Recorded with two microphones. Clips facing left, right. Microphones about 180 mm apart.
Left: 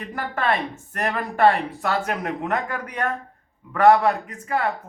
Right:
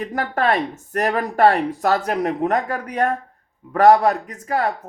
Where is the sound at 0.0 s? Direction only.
40° right (ahead or behind).